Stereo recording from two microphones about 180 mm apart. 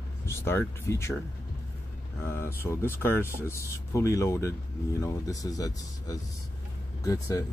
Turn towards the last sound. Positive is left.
turn(degrees=20)  # may be behind; listen again after turning